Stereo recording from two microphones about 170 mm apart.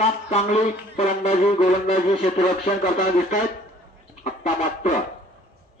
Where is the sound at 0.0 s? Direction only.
40° left (ahead or behind).